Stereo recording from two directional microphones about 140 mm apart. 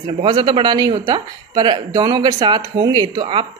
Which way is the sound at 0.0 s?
40° right (ahead or behind).